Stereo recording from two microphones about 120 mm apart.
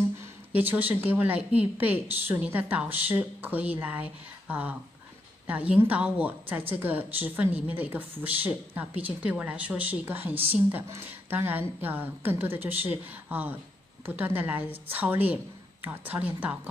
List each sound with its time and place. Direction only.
0.2 s a woman's voice: 15° right (ahead or behind)